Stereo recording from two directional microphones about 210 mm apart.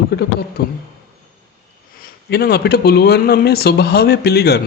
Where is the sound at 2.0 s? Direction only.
50° left (ahead or behind).